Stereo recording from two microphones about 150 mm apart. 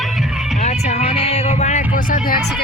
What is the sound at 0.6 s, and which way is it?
Speech, 50° left (ahead or behind).